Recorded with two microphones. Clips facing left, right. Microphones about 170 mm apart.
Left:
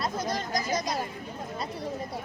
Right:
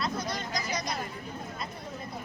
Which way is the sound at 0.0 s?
45° left (ahead or behind).